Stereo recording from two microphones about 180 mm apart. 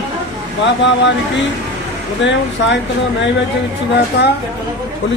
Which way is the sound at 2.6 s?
85° left.